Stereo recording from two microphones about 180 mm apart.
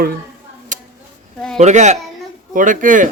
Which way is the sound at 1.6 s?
40° right (ahead or behind).